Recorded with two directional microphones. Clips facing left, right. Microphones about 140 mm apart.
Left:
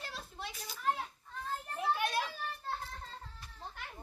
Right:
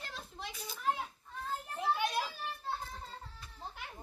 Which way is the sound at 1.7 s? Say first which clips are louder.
Even; centre (ahead or behind).